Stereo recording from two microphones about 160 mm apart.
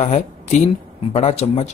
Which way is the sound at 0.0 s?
45° left (ahead or behind).